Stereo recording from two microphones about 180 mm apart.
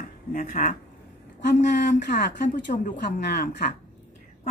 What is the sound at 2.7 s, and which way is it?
Speech, 45° left (ahead or behind).